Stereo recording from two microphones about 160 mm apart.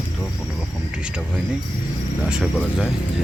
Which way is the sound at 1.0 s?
5° right (ahead or behind).